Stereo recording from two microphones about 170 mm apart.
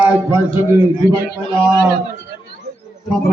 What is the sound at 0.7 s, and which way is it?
A man's voice, 10° right (ahead or behind).